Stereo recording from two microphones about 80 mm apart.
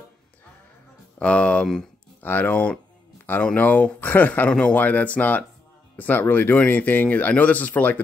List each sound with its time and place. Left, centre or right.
1.2 s speech: centre
2.2 s speech: left